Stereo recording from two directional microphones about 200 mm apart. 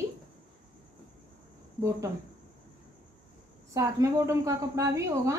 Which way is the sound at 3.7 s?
15° right (ahead or behind).